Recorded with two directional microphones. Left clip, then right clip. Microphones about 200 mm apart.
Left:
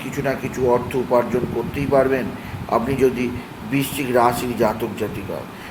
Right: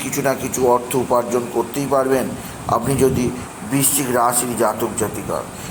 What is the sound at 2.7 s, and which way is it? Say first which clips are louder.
A man's voice: right 1 dB; 10° right (ahead or behind).